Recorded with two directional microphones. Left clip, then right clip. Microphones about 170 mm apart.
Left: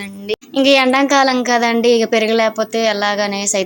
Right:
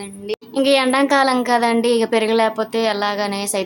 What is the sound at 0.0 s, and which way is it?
A woman's voice, 15° left (ahead or behind).